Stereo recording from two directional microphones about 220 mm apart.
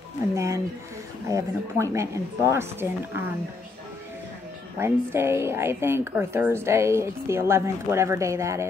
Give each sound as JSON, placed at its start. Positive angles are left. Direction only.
{"t": 0.3, "sound": "a woman's voice", "side_deg": -15}
{"t": 4.7, "sound": "a woman's voice", "side_deg": -10}